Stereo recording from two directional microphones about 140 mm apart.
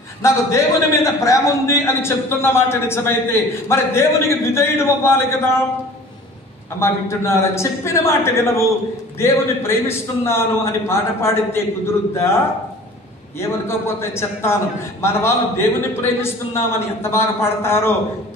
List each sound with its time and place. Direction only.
0.2 s a man's voice: 20° left (ahead or behind)
6.8 s a man's voice: 20° left (ahead or behind)
13.4 s a man's voice: 20° left (ahead or behind)